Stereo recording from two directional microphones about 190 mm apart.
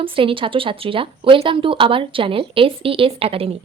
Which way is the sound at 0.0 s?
30° right (ahead or behind).